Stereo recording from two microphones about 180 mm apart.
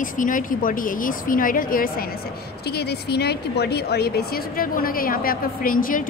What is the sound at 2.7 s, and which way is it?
A woman's voice, 65° left (ahead or behind).